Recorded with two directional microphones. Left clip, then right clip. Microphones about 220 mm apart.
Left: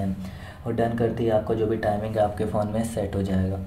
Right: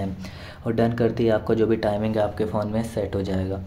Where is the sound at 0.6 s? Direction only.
45° right (ahead or behind).